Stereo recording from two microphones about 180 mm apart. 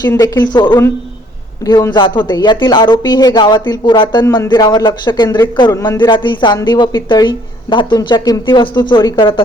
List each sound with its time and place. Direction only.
0.1 s speech: 20° left (ahead or behind)